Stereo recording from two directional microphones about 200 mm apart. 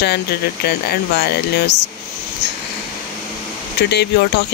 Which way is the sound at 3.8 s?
55° left (ahead or behind).